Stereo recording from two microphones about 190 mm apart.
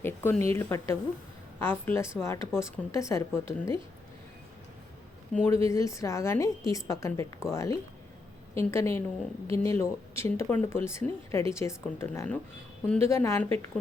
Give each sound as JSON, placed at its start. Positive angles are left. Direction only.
{"t": 0.0, "sound": "speech", "side_deg": 10}
{"t": 5.3, "sound": "speech", "side_deg": 10}